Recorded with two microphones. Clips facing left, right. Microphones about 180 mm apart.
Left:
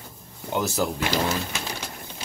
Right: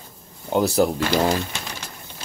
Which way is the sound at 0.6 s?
35° right (ahead or behind).